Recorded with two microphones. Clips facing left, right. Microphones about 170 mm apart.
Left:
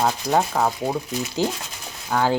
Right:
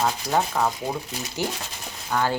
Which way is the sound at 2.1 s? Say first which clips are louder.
Left 3 dB; 10° left (ahead or behind).